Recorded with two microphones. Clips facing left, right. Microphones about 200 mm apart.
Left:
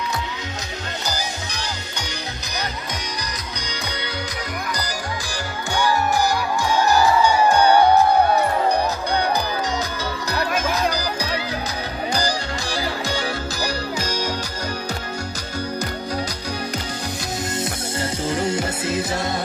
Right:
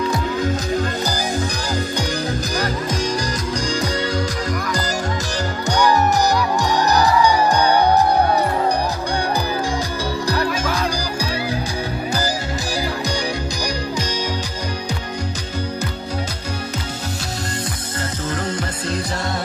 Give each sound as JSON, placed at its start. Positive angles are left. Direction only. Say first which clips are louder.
{"t": 5.7, "sound": "music", "louder": "right 4 dB", "side_deg": -40}
{"t": 12.1, "sound": "music", "louder": "right 1 dB", "side_deg": -5}
{"t": 18.3, "sound": "music", "louder": "left 3 dB", "side_deg": 10}